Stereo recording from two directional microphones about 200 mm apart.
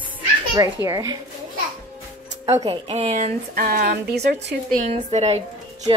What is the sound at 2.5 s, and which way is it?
Speech, 25° right (ahead or behind).